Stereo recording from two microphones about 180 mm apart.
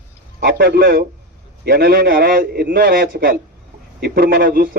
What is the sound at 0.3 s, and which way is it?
A man's voice, 55° right (ahead or behind).